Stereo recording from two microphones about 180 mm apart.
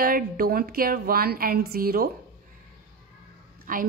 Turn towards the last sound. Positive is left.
turn(degrees=-50)  # may be behind; listen again after turning